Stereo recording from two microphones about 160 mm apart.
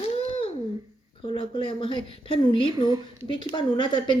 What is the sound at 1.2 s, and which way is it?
A woman's voice, 30° left (ahead or behind).